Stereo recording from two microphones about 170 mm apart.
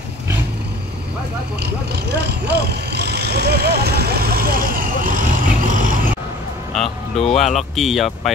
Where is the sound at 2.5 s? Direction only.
75° right (ahead or behind); by 6.0 s 50° right (ahead or behind).